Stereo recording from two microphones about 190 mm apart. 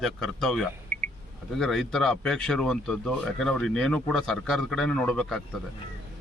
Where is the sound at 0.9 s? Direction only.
45° right (ahead or behind).